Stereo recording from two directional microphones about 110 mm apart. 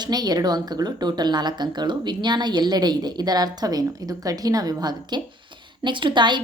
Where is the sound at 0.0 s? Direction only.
40° right (ahead or behind).